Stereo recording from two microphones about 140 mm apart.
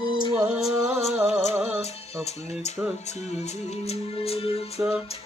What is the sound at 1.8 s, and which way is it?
Speech, 50° left (ahead or behind).